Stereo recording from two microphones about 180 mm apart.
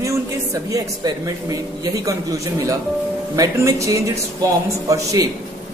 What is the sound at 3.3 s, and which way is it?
A man's voice, 15° right (ahead or behind).